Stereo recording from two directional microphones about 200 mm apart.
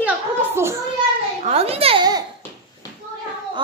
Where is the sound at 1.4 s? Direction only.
30° right (ahead or behind).